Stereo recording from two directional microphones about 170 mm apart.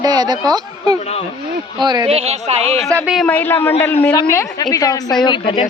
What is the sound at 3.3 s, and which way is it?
Speech, 10° left (ahead or behind).